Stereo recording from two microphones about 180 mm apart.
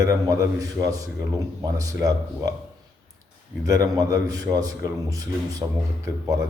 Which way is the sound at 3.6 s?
20° right (ahead or behind).